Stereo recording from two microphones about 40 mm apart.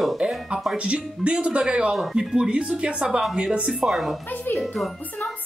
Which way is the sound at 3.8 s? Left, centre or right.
Centre.